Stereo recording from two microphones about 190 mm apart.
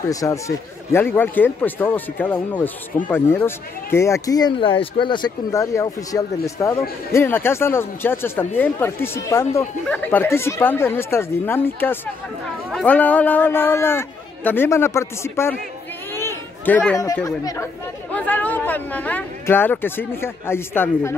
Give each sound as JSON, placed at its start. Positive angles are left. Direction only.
{"t": 0.1, "sound": "speech", "side_deg": 15}
{"t": 16.1, "sound": "chatter", "side_deg": 10}
{"t": 17.0, "sound": "speech", "side_deg": 15}